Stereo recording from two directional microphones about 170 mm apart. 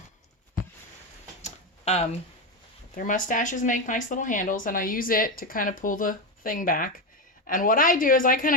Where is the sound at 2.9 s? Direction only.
50° left (ahead or behind).